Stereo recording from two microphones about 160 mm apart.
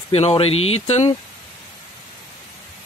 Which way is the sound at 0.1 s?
35° left (ahead or behind).